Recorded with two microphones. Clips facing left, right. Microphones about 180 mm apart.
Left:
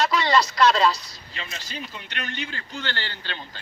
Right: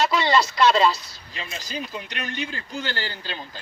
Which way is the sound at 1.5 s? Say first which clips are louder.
Right 7 dB; 40° right (ahead or behind).